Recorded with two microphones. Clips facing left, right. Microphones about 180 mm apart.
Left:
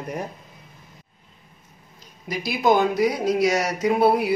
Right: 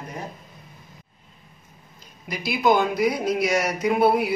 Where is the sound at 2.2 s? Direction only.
35° left (ahead or behind).